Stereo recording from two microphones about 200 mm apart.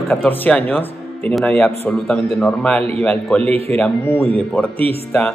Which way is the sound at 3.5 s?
30° right (ahead or behind).